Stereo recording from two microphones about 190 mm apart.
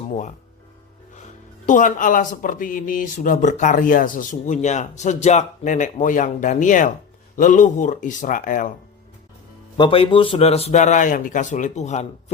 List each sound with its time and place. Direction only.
0.1 s speech: 40° left (ahead or behind)
1.6 s speech: 45° left (ahead or behind)
9.7 s speech: 25° left (ahead or behind)